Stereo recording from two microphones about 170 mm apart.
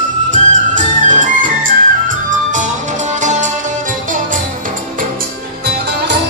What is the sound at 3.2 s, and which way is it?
Music, 45° right (ahead or behind).